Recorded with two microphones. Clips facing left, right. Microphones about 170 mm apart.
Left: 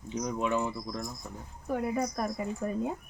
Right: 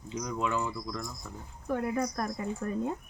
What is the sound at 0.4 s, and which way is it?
Speech, 20° left (ahead or behind).